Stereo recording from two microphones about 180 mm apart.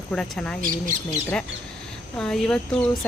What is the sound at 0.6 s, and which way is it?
Speech, 45° right (ahead or behind).